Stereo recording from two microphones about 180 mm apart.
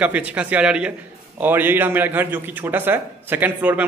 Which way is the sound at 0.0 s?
5° right (ahead or behind).